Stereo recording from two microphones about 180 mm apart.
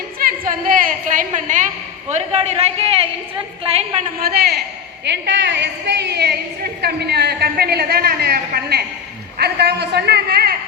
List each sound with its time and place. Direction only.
0.2 s a woman's voice: 50° right (ahead or behind); by 3.8 s 35° right (ahead or behind)
4.2 s a woman's voice: 60° right (ahead or behind)
5.0 s a woman's voice: 75° right (ahead or behind)